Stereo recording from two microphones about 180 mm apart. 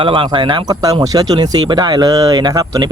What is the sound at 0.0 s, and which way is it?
Speech, 30° right (ahead or behind).